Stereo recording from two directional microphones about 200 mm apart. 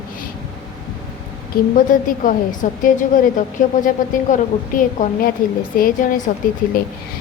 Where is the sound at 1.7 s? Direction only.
40° left (ahead or behind).